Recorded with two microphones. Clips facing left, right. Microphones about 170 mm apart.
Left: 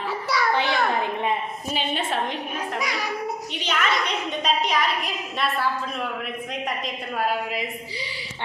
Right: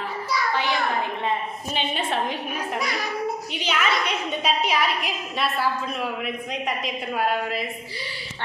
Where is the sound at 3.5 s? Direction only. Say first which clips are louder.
Left 1 dB; 5° right (ahead or behind).